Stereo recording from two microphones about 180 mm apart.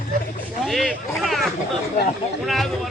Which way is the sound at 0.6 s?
Centre (ahead or behind).